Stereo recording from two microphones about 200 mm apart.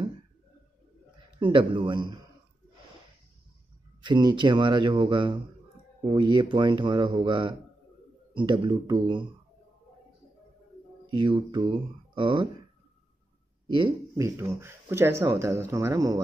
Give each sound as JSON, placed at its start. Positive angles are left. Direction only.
{"t": 1.4, "sound": "speech", "side_deg": -25}
{"t": 4.0, "sound": "speech", "side_deg": -20}
{"t": 11.1, "sound": "speech", "side_deg": -25}
{"t": 14.1, "sound": "speech", "side_deg": -15}